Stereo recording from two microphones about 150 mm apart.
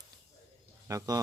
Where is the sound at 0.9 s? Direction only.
20° right (ahead or behind).